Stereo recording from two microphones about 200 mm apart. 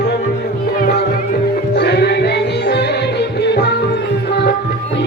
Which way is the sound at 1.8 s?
55° left (ahead or behind).